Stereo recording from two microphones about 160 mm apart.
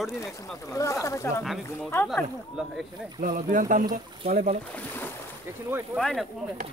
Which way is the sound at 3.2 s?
60° right (ahead or behind).